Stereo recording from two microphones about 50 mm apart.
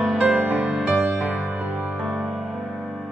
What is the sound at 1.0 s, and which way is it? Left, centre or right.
Music, centre.